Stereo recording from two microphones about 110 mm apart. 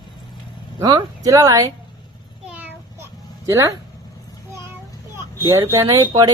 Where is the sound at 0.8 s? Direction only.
35° right (ahead or behind).